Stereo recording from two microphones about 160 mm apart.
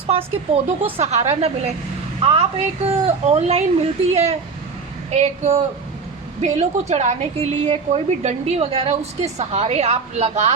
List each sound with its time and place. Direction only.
0.1 s a woman's voice: 35° right (ahead or behind)